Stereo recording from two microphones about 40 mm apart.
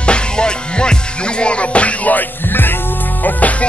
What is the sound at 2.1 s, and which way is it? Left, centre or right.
Music, left.